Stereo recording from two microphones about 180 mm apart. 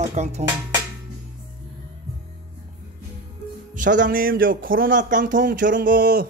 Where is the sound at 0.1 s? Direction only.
40° right (ahead or behind).